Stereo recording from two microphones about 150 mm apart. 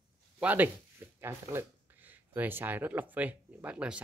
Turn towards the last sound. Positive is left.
turn(degrees=-10)  # may be behind; listen again after turning